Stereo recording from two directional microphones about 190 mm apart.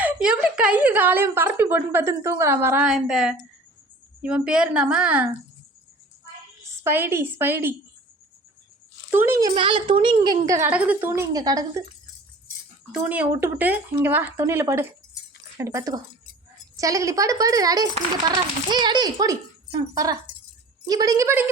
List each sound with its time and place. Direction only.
0.0 s a woman's voice: 5° right (ahead or behind)
6.8 s a woman's voice: 10° right (ahead or behind)
9.1 s a woman's voice: 15° right (ahead or behind)
9.6 s a woman's voice: 25° right (ahead or behind)
12.9 s a woman's voice: 5° right (ahead or behind)